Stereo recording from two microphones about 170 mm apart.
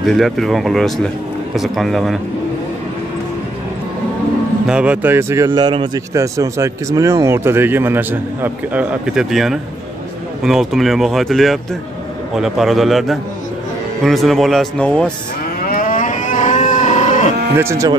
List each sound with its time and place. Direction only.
0.0 s a man's voice: centre (ahead or behind)
4.6 s a man's voice: 5° right (ahead or behind)
15.6 s livestock: 55° left (ahead or behind)
17.6 s a man's voice: 15° right (ahead or behind)